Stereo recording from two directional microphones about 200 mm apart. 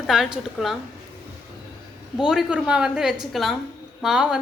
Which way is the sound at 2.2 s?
5° right (ahead or behind).